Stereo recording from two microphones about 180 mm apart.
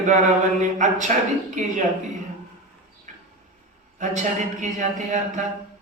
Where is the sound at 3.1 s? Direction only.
40° right (ahead or behind).